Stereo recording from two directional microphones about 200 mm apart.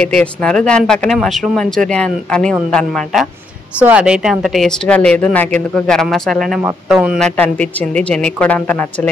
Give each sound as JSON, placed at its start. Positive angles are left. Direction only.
{"t": 0.0, "sound": "speech", "side_deg": 5}